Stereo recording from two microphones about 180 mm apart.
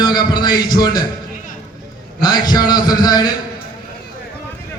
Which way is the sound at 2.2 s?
20° left (ahead or behind).